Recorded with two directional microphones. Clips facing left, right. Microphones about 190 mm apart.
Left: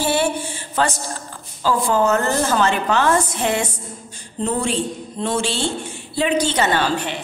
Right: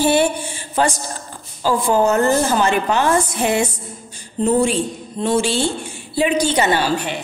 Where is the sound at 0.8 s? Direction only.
15° right (ahead or behind).